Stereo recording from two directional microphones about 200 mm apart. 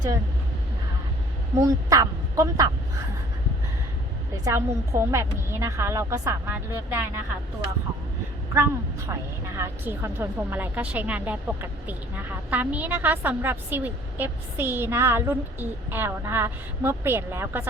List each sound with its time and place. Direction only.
1.5 s speech: 15° right (ahead or behind)
4.4 s speech: 15° right (ahead or behind)
8.5 s speech: 15° right (ahead or behind)